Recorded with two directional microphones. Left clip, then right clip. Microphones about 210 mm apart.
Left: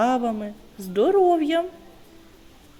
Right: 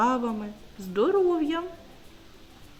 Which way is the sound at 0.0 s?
10° left (ahead or behind).